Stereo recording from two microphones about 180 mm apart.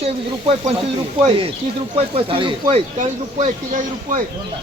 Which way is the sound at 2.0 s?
30° right (ahead or behind).